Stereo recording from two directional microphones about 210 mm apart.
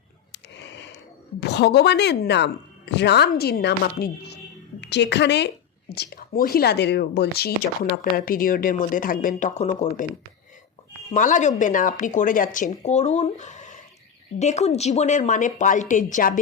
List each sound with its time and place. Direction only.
0.3 s a sound: 60° left (ahead or behind)
1.4 s a woman's voice: 55° left (ahead or behind); by 10.1 s 35° left (ahead or behind)
11.1 s speech: 40° left (ahead or behind)